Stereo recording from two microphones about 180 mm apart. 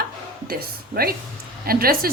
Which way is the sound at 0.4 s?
55° right (ahead or behind).